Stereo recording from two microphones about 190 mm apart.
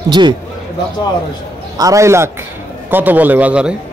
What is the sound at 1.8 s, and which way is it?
Speech, 15° right (ahead or behind).